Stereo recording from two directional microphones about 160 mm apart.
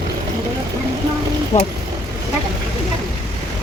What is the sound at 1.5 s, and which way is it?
Speech, 50° left (ahead or behind).